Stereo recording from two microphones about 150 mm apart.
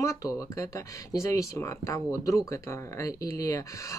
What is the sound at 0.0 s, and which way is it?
Speech, 20° left (ahead or behind).